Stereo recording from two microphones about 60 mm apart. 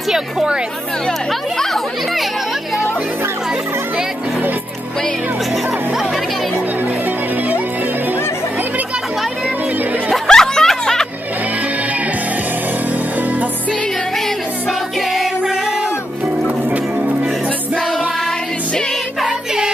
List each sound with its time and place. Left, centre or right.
0.1 s speech: centre
1.6 s speech: centre
7.1 s music: right
10.1 s music: centre
12.9 s music: right
14.7 s music: centre
16.6 s music: right
19.2 s music: centre